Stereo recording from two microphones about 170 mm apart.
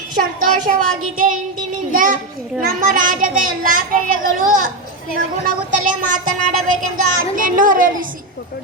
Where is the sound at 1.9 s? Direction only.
50° right (ahead or behind).